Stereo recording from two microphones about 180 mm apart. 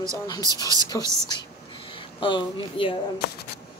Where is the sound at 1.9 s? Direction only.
30° left (ahead or behind).